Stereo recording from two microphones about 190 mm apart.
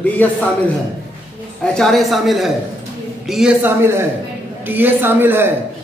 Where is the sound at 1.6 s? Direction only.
5° left (ahead or behind).